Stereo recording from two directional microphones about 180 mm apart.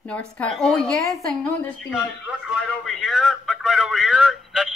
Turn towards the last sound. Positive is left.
turn(degrees=0)  # may be behind; listen again after turning